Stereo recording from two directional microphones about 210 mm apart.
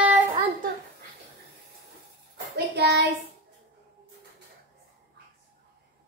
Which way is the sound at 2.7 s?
55° right (ahead or behind).